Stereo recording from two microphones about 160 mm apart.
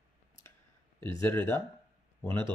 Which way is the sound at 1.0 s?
15° left (ahead or behind).